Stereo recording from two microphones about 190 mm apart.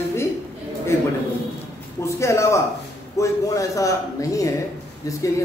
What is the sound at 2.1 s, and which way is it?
A man's voice, 15° left (ahead or behind).